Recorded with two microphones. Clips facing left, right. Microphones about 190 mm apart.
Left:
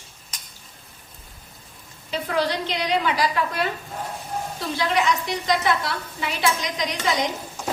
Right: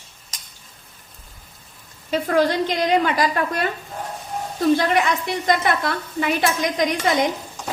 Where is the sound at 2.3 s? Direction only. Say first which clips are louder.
Right 5 dB; 45° right (ahead or behind).